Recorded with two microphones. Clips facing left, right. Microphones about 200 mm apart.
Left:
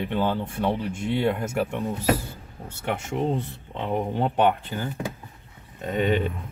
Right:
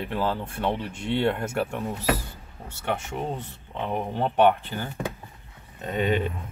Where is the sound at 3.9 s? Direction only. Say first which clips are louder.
Left 3 dB; 15° left (ahead or behind).